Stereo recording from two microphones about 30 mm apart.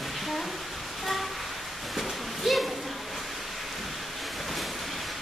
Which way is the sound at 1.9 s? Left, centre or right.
Centre.